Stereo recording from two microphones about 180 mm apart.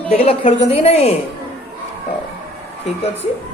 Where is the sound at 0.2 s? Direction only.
35° left (ahead or behind).